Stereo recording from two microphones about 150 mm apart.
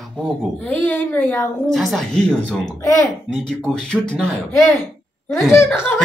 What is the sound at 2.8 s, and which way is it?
Speech, 20° left (ahead or behind).